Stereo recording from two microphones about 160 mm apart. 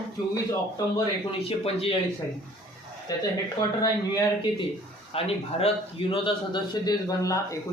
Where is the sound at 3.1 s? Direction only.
25° left (ahead or behind).